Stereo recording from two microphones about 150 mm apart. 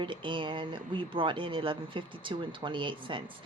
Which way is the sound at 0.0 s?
35° right (ahead or behind).